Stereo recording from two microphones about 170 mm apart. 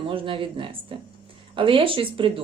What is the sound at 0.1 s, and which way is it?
Speech, 30° right (ahead or behind).